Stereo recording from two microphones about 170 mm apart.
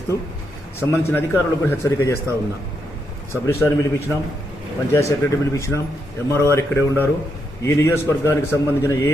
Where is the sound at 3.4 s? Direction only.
15° left (ahead or behind).